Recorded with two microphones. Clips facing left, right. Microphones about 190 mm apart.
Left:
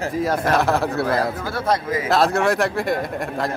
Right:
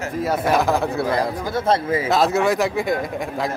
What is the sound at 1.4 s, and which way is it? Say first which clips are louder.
Speech: right 2 dB; 25° right (ahead or behind).